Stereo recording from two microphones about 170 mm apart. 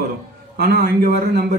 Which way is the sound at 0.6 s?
65° right (ahead or behind).